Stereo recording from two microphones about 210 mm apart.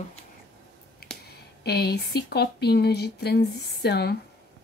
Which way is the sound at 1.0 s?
50° left (ahead or behind).